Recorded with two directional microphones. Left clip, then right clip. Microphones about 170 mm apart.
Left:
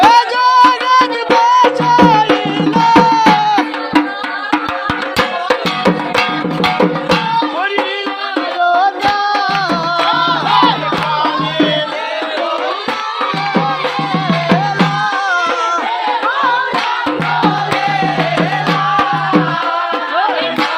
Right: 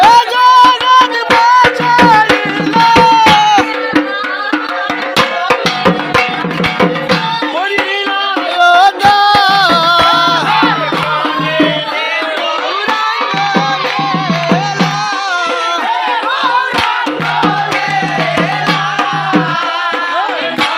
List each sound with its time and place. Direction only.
0.1 s music: 5° left (ahead or behind)
1.5 s music: 20° left (ahead or behind)
2.7 s music: 10° left (ahead or behind)
8.5 s music: 20° right (ahead or behind)